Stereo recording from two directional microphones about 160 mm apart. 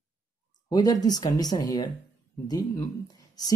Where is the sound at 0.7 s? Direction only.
25° left (ahead or behind).